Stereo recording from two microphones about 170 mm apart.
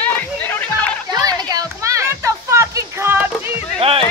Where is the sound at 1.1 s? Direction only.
25° right (ahead or behind).